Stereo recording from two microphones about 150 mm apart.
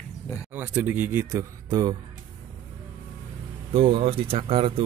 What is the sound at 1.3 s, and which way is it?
Speech, 25° right (ahead or behind).